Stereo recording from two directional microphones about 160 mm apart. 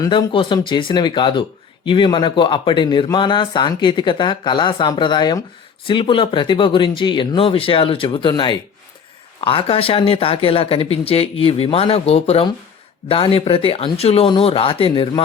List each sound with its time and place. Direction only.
0.0 s speech: 25° left (ahead or behind)